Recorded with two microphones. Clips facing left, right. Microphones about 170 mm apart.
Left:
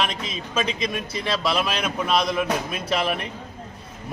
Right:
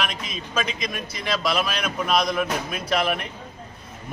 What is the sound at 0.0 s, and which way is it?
Speech, 30° left (ahead or behind).